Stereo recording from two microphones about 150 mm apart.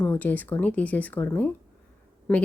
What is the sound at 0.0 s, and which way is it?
Speech, 10° left (ahead or behind).